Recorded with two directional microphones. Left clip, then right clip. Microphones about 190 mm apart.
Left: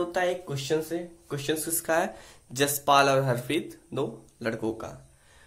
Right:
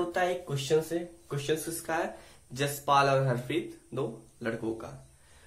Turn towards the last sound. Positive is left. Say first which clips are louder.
# left 3 dB
turn(degrees=55)  # may be behind; listen again after turning